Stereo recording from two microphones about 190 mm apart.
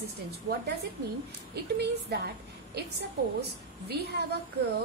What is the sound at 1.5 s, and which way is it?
Speech, 60° right (ahead or behind).